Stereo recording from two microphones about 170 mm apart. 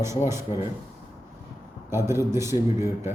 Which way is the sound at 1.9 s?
15° right (ahead or behind).